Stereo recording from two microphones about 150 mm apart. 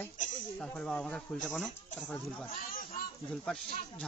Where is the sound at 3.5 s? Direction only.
5° left (ahead or behind).